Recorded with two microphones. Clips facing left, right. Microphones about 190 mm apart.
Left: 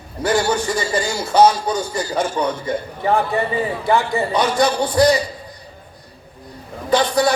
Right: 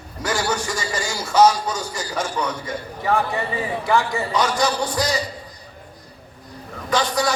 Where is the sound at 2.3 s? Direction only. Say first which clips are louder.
Left 5 dB; 30° left (ahead or behind).